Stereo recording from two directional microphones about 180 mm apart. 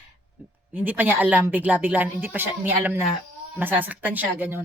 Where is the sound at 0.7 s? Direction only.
10° right (ahead or behind).